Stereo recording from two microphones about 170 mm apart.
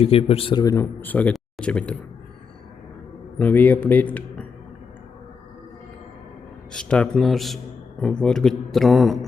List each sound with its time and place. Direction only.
0.0 s speech: 35° left (ahead or behind)
0.6 s speech: 15° left (ahead or behind)
3.3 s speech: 10° left (ahead or behind)
6.7 s speech: 5° left (ahead or behind)